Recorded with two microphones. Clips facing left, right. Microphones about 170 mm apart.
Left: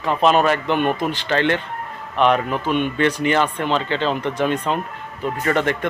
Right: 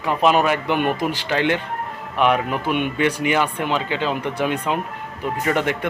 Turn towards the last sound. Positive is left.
turn(degrees=-10)  # may be behind; listen again after turning